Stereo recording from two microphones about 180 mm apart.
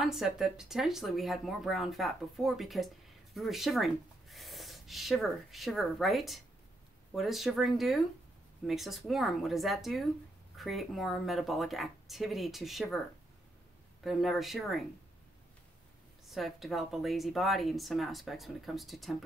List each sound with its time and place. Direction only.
0.0 s a woman's voice: centre (ahead or behind)
14.0 s a woman's voice: centre (ahead or behind)
16.3 s a woman's voice: centre (ahead or behind)